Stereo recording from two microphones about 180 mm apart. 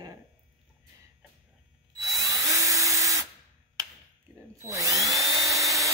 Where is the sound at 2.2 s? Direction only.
20° right (ahead or behind).